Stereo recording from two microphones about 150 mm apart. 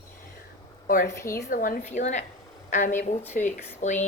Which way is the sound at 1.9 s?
50° left (ahead or behind).